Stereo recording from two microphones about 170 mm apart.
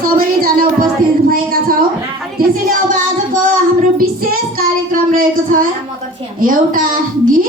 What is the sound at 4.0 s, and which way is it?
Child singing, 60° right (ahead or behind).